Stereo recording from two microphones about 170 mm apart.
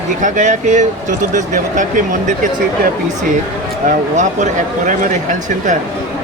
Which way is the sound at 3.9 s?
45° right (ahead or behind).